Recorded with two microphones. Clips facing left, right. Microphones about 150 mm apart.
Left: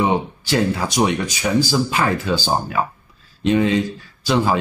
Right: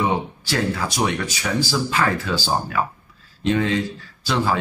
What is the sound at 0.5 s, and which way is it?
Speech, 20° left (ahead or behind).